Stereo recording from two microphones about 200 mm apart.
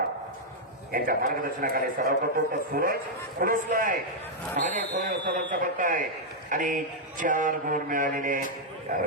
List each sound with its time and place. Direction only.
0.9 s a man's voice: 45° right (ahead or behind)